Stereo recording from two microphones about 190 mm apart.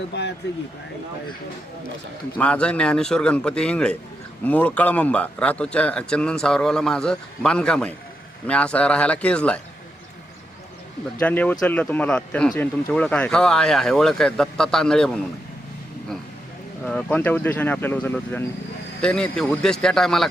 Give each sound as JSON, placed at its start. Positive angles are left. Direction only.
{"t": 0.1, "sound": "speech", "side_deg": 65}
{"t": 2.4, "sound": "a man's voice", "side_deg": 5}
{"t": 11.2, "sound": "a man's voice", "side_deg": 10}
{"t": 16.8, "sound": "a man's voice", "side_deg": 10}